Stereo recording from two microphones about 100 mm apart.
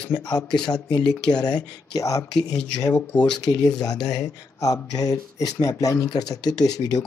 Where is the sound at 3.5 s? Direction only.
50° left (ahead or behind).